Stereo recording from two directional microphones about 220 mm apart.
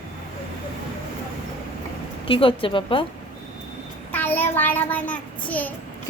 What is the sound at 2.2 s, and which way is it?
Speech, 25° left (ahead or behind).